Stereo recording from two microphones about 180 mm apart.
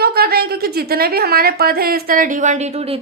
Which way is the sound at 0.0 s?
60° right (ahead or behind).